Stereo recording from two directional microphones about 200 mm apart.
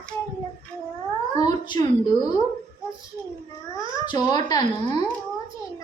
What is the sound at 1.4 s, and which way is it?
Speech, 20° left (ahead or behind).